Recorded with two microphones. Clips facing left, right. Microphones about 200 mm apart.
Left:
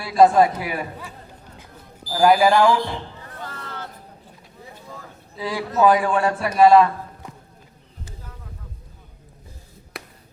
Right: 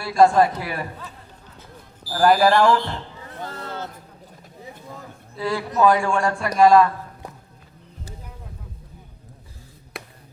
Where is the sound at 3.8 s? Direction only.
45° right (ahead or behind).